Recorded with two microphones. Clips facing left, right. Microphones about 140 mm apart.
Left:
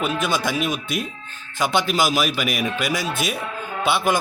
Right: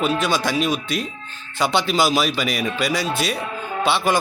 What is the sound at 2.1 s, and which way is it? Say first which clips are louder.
A man's voice: right 1 dB; 5° left (ahead or behind).